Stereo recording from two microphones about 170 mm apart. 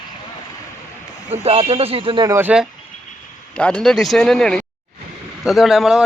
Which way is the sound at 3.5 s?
5° left (ahead or behind).